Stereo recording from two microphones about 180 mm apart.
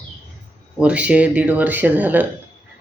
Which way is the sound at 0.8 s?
5° right (ahead or behind).